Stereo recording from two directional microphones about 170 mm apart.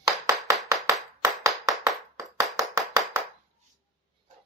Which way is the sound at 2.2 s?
20° right (ahead or behind).